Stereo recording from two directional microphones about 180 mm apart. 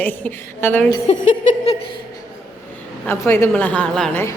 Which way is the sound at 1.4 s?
35° left (ahead or behind).